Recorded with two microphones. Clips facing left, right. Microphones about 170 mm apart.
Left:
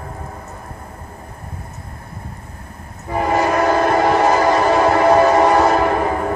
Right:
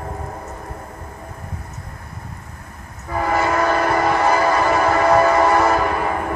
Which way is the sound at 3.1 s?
20° left (ahead or behind).